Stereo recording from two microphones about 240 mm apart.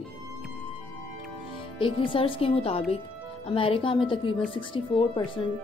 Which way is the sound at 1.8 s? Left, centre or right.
Left.